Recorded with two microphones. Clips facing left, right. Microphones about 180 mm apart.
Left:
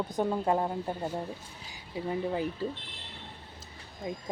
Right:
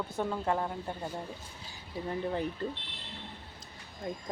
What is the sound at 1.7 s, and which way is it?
Speech, 10° left (ahead or behind).